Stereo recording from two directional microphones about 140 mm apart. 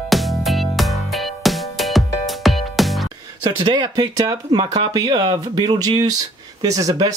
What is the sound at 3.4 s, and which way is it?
Speech, 30° right (ahead or behind).